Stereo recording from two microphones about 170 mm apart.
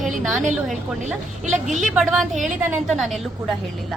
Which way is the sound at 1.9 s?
Centre (ahead or behind).